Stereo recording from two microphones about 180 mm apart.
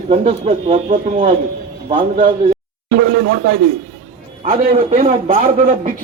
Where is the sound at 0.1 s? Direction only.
35° right (ahead or behind).